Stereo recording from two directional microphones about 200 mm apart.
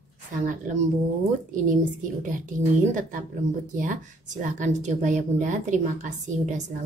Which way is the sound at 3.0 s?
40° right (ahead or behind).